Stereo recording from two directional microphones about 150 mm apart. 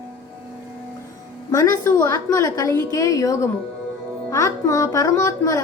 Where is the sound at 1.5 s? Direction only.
20° left (ahead or behind).